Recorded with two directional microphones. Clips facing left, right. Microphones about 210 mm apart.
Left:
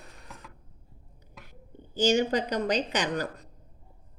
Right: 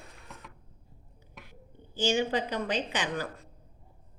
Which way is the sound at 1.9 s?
40° left (ahead or behind).